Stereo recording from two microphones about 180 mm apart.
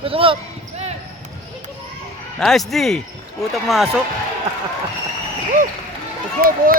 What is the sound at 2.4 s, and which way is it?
A man's voice, centre (ahead or behind).